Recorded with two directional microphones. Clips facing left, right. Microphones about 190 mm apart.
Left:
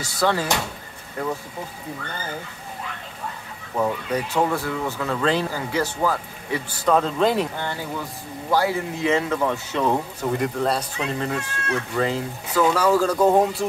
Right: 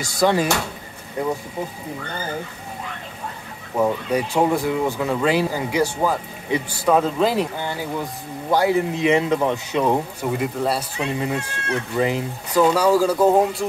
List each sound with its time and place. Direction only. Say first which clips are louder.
0.0 s speech: right 4 dB; 15° right (ahead or behind)
3.7 s a man's voice: right 3 dB; 10° right (ahead or behind)